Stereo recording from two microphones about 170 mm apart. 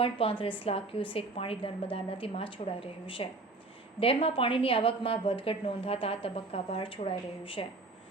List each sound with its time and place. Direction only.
0.0 s a woman's voice: 35° left (ahead or behind)